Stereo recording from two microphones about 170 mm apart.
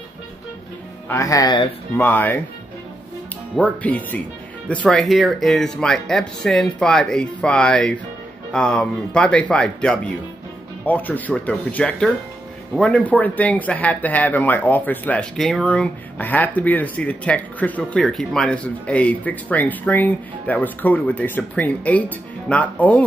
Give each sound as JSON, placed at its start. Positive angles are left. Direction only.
{"t": 1.0, "sound": "speech", "side_deg": 15}
{"t": 2.0, "sound": "speech", "side_deg": 10}
{"t": 3.5, "sound": "speech", "side_deg": 10}